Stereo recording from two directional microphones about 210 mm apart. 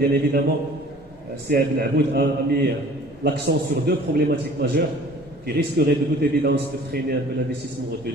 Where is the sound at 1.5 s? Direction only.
50° right (ahead or behind).